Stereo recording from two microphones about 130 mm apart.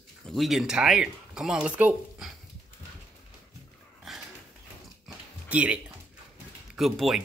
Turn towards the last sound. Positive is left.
turn(degrees=0)  # may be behind; listen again after turning